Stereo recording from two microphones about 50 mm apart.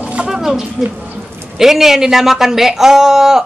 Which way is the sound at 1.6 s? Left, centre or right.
Centre.